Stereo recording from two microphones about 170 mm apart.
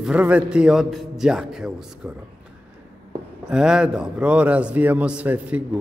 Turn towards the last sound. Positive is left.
turn(degrees=-10)  # may be behind; listen again after turning